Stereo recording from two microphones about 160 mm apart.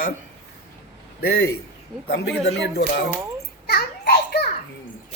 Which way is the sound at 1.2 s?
85° left.